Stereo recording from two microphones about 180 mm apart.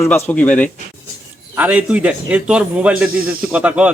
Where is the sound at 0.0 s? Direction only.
10° left (ahead or behind).